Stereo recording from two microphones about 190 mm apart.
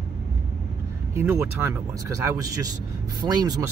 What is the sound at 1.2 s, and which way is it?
Speech, 10° right (ahead or behind).